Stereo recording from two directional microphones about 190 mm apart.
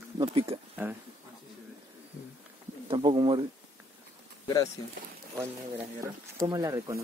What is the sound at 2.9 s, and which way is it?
Speech, 25° right (ahead or behind).